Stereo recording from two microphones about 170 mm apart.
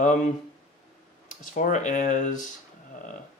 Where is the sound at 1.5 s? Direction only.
45° left (ahead or behind).